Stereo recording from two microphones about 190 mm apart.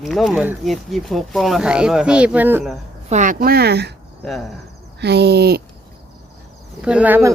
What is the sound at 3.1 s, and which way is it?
Speech, 40° right (ahead or behind).